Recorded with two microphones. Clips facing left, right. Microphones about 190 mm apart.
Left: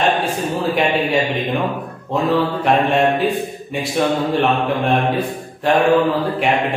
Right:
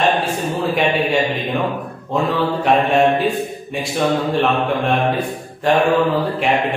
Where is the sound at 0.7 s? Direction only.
Centre (ahead or behind).